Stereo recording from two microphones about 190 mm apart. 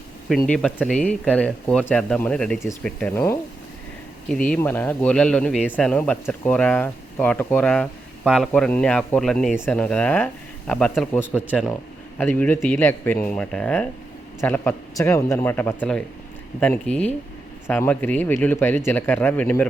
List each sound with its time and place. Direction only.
0.3 s speech: 5° left (ahead or behind)